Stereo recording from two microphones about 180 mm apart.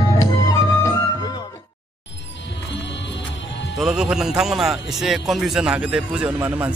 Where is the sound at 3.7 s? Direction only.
5° right (ahead or behind).